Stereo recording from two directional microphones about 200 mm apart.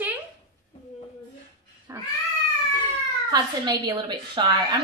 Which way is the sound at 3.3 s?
20° right (ahead or behind).